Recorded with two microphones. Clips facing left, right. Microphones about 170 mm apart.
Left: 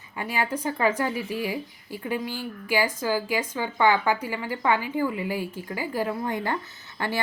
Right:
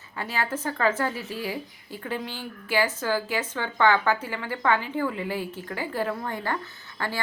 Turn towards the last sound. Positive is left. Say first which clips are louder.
# left 2 dB
turn(degrees=15)  # may be behind; listen again after turning